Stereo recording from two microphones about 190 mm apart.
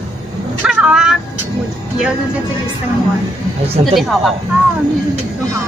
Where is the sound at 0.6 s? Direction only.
5° right (ahead or behind).